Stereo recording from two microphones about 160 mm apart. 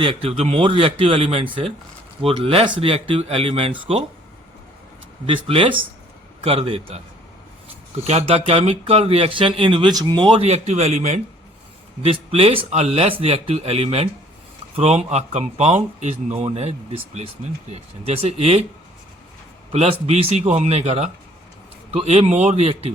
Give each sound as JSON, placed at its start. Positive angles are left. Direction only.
{"t": 0.0, "sound": "speech", "side_deg": -35}
{"t": 5.2, "sound": "speech", "side_deg": -35}
{"t": 8.0, "sound": "speech", "side_deg": -40}
{"t": 19.7, "sound": "speech", "side_deg": -40}